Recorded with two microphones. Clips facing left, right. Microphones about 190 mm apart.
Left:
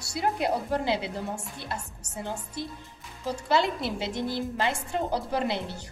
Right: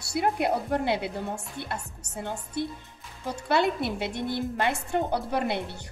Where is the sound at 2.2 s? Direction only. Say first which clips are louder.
Right 3 dB; 60° right (ahead or behind).